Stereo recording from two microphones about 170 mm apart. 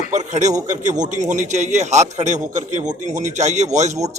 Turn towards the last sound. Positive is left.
turn(degrees=-40)  # may be behind; listen again after turning